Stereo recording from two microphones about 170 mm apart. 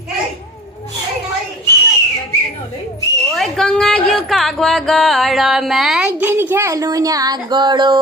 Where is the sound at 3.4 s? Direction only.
5° left (ahead or behind).